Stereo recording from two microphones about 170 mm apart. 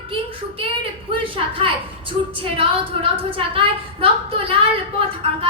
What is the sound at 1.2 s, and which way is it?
A woman's voice, 30° right (ahead or behind).